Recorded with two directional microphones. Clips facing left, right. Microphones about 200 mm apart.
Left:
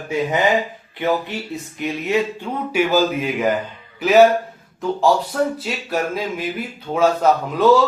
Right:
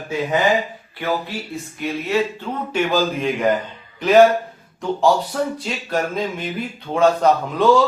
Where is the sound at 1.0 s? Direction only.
20° left (ahead or behind).